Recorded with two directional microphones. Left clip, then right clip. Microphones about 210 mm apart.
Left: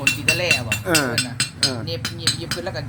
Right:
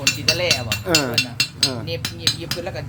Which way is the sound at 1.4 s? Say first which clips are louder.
Right 2 dB; 40° right (ahead or behind).